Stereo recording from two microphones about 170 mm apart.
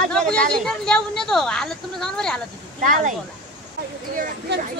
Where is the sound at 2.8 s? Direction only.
50° right (ahead or behind).